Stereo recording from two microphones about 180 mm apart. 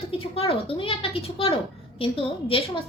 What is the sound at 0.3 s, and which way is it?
Speech, 30° left (ahead or behind).